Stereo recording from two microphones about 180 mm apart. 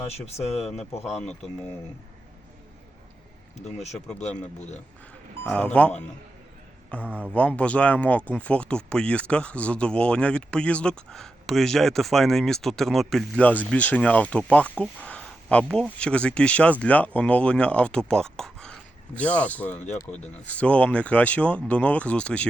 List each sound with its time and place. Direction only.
0.3 s speech: 35° left (ahead or behind)
3.6 s speech: 40° left (ahead or behind)
5.4 s speech: 5° left (ahead or behind)
7.0 s speech: 10° right (ahead or behind)
7.3 s speech: 5° left (ahead or behind)
19.7 s speech: 40° left (ahead or behind)
20.1 s speech: 5° left (ahead or behind)